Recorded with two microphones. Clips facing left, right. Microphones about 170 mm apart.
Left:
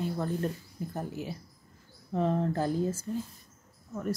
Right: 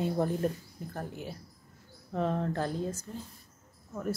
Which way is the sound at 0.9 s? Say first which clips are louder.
Left 2 dB; 5° left (ahead or behind).